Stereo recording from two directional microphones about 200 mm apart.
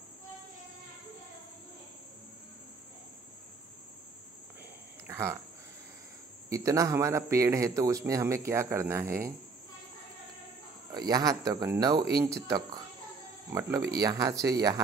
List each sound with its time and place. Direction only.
5.0 s speech: 10° right (ahead or behind)
6.5 s a man's voice: 15° right (ahead or behind)
10.9 s a man's voice: 20° right (ahead or behind)